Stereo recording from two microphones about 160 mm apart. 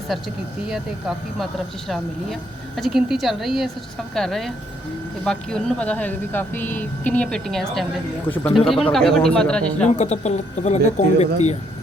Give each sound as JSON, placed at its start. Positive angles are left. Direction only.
{"t": 0.1, "sound": "speech", "side_deg": 0}
{"t": 10.0, "sound": "speech", "side_deg": 45}